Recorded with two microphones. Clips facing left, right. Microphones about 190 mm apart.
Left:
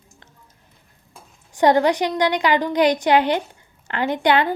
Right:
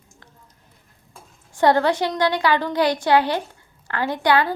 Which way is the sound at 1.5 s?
15° left (ahead or behind).